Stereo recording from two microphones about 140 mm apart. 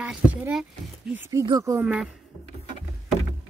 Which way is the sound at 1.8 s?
10° right (ahead or behind).